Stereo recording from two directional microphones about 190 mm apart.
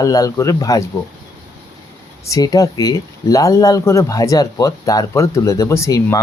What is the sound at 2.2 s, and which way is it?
Speech, 20° left (ahead or behind).